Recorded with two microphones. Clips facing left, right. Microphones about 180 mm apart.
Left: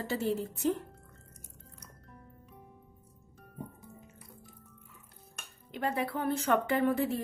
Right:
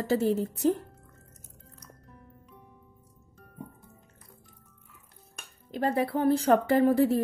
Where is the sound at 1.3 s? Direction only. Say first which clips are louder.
Right 1 dB; 10° left (ahead or behind).